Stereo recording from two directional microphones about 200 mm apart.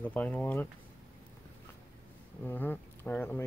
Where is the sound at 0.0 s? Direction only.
5° left (ahead or behind).